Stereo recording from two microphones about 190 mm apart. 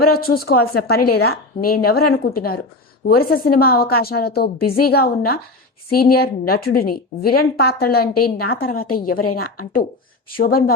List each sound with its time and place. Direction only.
0.1 s a woman's voice: 50° left (ahead or behind)